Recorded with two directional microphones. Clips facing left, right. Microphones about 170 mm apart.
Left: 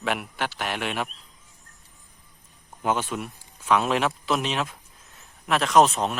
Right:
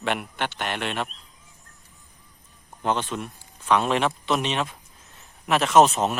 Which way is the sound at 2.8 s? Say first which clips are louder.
Even; 5° left (ahead or behind).